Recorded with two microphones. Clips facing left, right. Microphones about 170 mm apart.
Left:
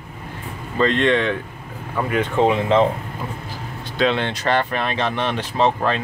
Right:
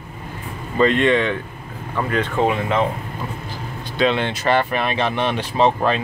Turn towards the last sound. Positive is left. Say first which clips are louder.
# right 2 dB
turn(degrees=-15)  # may be behind; listen again after turning